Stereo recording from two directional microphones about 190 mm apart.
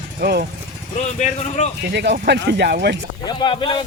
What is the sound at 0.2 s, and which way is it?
Speech, 55° right (ahead or behind).